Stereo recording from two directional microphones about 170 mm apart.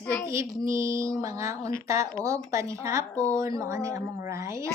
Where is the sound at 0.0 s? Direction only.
10° left (ahead or behind).